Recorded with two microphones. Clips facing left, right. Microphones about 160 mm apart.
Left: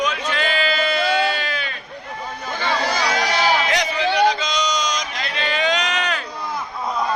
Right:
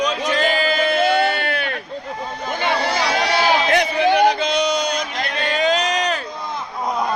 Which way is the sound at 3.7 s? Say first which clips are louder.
Right 5 dB; 55° right (ahead or behind).